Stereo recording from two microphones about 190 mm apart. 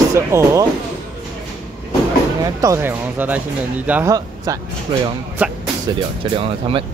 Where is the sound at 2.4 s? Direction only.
15° right (ahead or behind).